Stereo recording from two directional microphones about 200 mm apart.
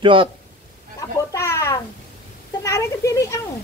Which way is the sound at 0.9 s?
15° left (ahead or behind).